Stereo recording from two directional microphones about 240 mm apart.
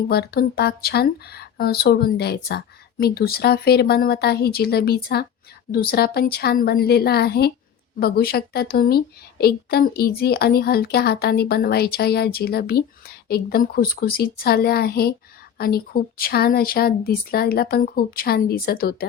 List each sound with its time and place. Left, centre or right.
0.1 s a woman's voice: left